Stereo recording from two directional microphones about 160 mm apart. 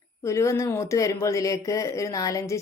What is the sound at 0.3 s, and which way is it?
Speech, 20° left (ahead or behind).